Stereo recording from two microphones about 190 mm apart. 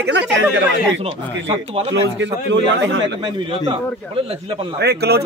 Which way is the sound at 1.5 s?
30° right (ahead or behind).